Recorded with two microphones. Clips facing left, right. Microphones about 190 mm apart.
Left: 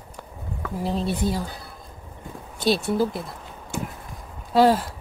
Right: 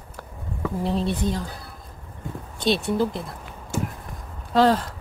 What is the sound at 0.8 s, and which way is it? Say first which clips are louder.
Speech: even; centre (ahead or behind).